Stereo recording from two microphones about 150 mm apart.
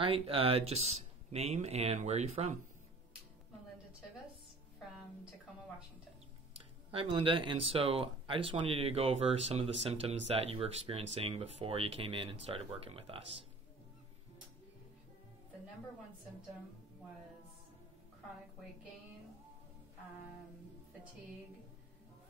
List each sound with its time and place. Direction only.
0.0 s speech: 35° right (ahead or behind)
6.5 s speech: 35° right (ahead or behind)